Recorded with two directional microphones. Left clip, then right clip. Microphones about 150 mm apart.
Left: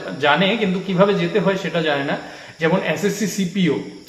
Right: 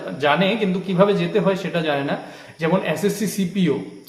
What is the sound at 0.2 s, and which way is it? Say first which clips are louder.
Speech: left 2 dB; 25° right (ahead or behind).